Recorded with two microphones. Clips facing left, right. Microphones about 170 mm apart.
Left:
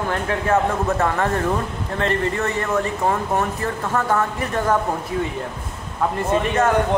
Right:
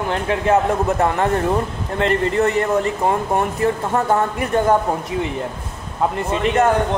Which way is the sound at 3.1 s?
20° right (ahead or behind).